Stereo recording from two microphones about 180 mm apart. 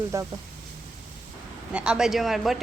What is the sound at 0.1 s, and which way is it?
Speech, 15° right (ahead or behind).